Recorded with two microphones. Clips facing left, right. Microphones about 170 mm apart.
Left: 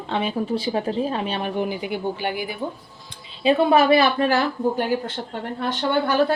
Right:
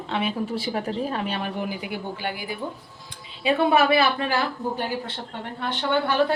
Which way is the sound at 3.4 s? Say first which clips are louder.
Left 3 dB; 30° left (ahead or behind).